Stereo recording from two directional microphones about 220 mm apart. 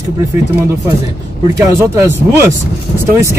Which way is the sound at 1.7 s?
10° right (ahead or behind).